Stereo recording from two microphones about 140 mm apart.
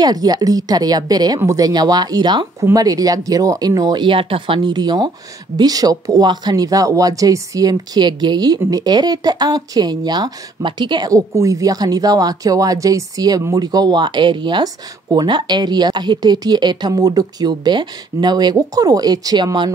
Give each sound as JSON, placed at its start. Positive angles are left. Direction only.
{"t": 0.0, "sound": "speech", "side_deg": -30}